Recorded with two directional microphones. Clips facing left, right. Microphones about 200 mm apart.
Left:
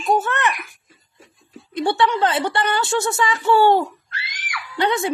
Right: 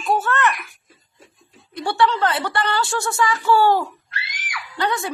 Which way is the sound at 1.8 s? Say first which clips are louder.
Left 1 dB; 20° left (ahead or behind).